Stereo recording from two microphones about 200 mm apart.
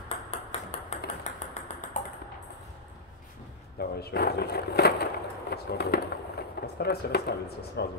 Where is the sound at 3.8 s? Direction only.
50° left (ahead or behind).